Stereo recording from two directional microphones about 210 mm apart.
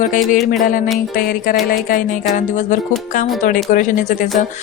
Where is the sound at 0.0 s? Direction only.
40° left (ahead or behind).